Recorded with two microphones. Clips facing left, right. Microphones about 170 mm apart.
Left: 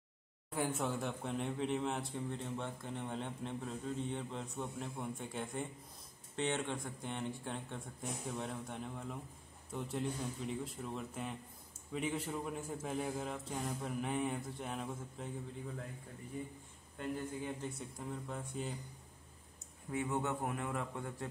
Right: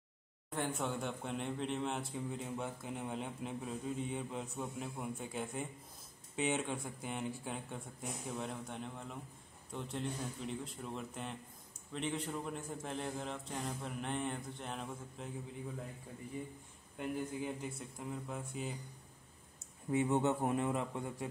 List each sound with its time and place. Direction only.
0.5 s speech: 5° left (ahead or behind)
17.0 s a man's voice: 15° right (ahead or behind)
17.6 s speech: centre (ahead or behind)
19.9 s a man's voice: 20° right (ahead or behind)